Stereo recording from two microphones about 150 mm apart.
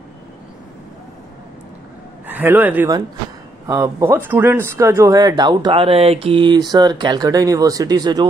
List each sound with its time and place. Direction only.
2.2 s a man's voice: 10° right (ahead or behind); by 8.3 s 25° right (ahead or behind)